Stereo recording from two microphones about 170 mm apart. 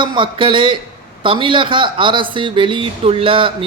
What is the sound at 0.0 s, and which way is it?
A man's voice, 30° right (ahead or behind).